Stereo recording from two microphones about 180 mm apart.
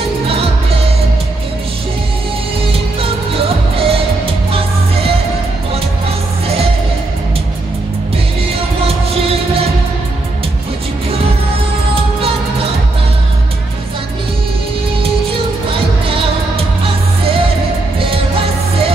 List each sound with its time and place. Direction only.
2.7 s music: 30° right (ahead or behind)
8.5 s music: 35° right (ahead or behind)
16.1 s music: 30° right (ahead or behind)